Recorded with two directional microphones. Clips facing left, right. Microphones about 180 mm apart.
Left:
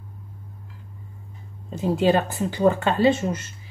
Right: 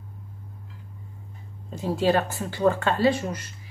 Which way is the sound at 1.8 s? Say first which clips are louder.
Left 3 dB; 20° left (ahead or behind).